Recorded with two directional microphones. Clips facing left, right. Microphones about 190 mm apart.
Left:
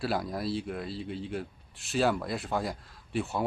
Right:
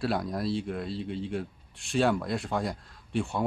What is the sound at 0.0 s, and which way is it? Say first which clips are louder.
Speech: right 2 dB; centre (ahead or behind).